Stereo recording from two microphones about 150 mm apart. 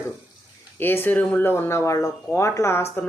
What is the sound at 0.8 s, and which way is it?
Speech, 15° left (ahead or behind).